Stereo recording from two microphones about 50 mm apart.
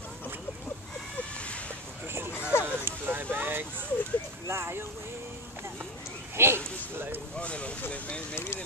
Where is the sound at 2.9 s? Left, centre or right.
Right.